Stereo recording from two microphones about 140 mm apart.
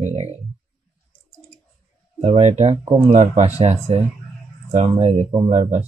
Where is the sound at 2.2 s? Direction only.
55° right (ahead or behind).